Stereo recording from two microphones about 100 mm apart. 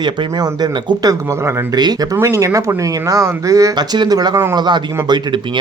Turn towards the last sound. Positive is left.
turn(degrees=-45)  # may be behind; listen again after turning